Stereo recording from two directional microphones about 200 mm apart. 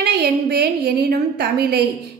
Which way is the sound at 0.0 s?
55° right (ahead or behind).